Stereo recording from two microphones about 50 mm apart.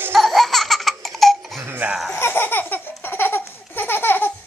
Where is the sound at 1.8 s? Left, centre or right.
Right.